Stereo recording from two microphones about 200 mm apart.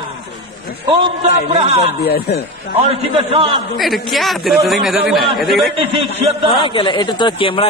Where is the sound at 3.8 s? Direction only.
Centre (ahead or behind).